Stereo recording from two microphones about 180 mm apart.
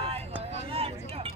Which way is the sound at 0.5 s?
30° right (ahead or behind).